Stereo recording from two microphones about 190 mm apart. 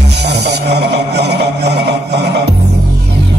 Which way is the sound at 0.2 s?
60° right (ahead or behind).